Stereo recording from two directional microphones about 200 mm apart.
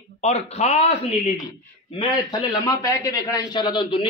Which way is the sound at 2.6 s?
15° left (ahead or behind).